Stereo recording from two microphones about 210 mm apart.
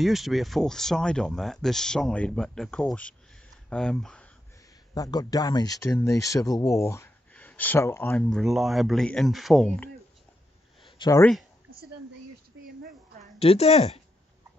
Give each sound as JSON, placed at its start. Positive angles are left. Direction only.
{"t": 0.0, "sound": "speech", "side_deg": 0}
{"t": 4.9, "sound": "speech", "side_deg": 15}
{"t": 11.0, "sound": "speech", "side_deg": 15}
{"t": 13.4, "sound": "a woman's voice", "side_deg": 30}